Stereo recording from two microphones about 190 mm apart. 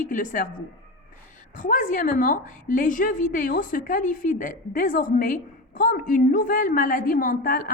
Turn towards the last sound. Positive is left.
turn(degrees=50)  # may be behind; listen again after turning